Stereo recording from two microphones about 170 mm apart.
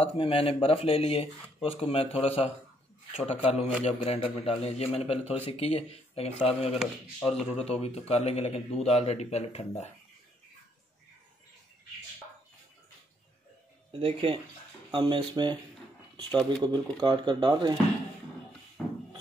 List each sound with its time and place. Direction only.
0.0 s a man's voice: 35° left (ahead or behind)
13.9 s speech: 35° right (ahead or behind)
18.8 s a sound: 5° right (ahead or behind)